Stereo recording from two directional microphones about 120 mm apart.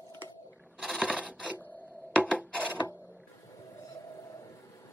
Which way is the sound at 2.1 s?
10° left (ahead or behind).